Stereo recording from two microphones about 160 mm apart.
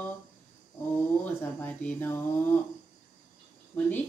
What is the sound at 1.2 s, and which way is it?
Speech, 10° left (ahead or behind).